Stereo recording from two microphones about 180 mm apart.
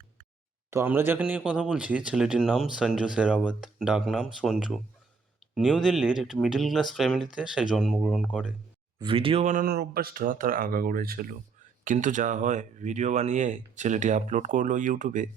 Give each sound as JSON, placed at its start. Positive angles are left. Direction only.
{"t": 0.7, "sound": "speech", "side_deg": -15}
{"t": 9.0, "sound": "speech", "side_deg": -30}